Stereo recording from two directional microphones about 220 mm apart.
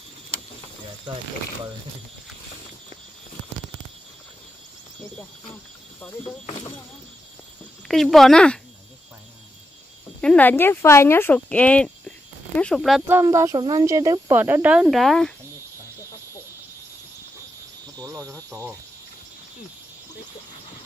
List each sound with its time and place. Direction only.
5.5 s speech: 5° left (ahead or behind)
7.9 s speech: centre (ahead or behind)
10.2 s speech: 5° left (ahead or behind)
13.2 s speech: 15° right (ahead or behind)
17.9 s a sound: 15° right (ahead or behind)